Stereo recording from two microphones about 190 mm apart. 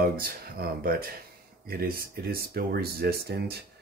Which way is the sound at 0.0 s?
50° right (ahead or behind).